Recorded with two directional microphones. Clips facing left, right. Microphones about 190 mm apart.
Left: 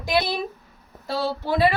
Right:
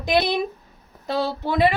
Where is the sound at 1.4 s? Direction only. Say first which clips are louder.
Even; 20° right (ahead or behind).